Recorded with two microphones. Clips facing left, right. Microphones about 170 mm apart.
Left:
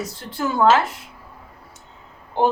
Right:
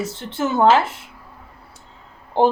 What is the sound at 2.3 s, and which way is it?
Speech, 30° right (ahead or behind).